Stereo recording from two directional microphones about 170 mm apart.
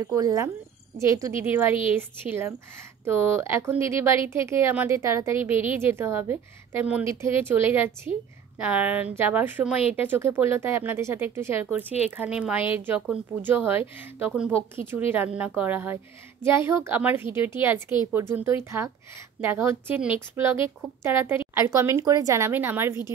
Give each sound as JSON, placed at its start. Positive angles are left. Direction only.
{"t": 0.0, "sound": "speech", "side_deg": -20}